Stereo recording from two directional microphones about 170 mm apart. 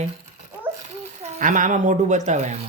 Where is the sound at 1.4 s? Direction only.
50° right (ahead or behind).